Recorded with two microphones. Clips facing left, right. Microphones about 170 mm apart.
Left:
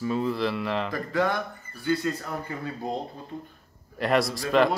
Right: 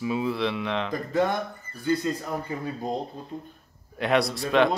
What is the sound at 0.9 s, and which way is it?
Speech, 20° right (ahead or behind).